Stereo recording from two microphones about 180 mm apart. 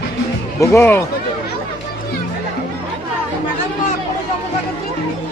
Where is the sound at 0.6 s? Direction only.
15° left (ahead or behind).